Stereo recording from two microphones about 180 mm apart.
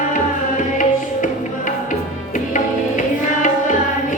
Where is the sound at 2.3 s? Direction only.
45° left (ahead or behind).